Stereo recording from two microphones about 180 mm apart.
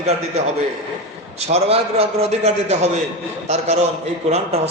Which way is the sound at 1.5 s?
35° right (ahead or behind).